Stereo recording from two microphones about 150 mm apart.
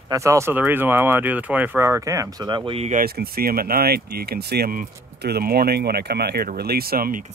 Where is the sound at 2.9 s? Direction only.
85° right.